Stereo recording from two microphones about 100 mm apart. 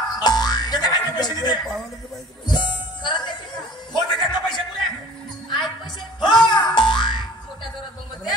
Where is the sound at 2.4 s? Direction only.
50° left (ahead or behind).